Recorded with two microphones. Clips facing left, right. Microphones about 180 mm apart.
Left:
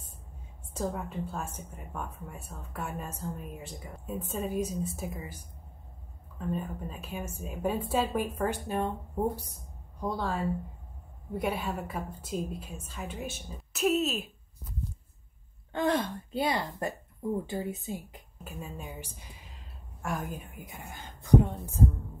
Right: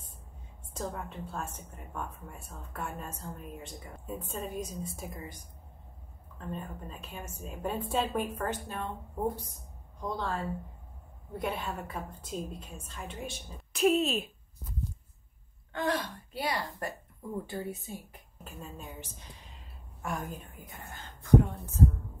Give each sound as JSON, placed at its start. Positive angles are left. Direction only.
{"t": 0.7, "sound": "speech", "side_deg": 10}
{"t": 9.9, "sound": "speech", "side_deg": 10}
{"t": 15.7, "sound": "speech", "side_deg": 25}
{"t": 18.4, "sound": "a woman's voice", "side_deg": 10}
{"t": 20.4, "sound": "speech", "side_deg": 10}